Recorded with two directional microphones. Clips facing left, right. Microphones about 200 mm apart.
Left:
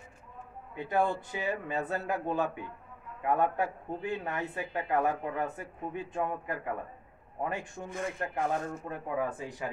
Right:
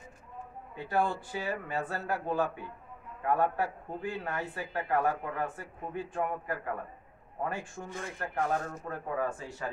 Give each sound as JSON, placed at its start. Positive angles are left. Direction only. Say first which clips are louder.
{"t": 0.7, "sound": "a man's voice", "louder": "left 1 dB", "side_deg": 20}